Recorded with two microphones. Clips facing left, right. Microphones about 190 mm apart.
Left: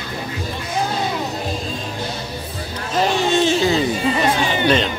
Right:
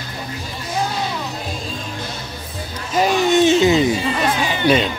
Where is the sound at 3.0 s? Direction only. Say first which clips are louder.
Right 2 dB; 20° right (ahead or behind).